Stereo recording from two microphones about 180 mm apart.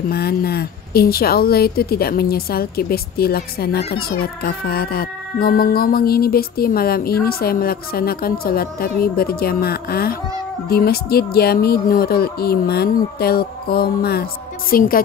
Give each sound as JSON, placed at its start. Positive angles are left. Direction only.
{"t": 0.1, "sound": "a woman's voice", "side_deg": 60}